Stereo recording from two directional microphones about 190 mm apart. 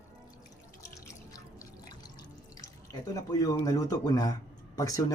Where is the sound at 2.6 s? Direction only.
20° left (ahead or behind).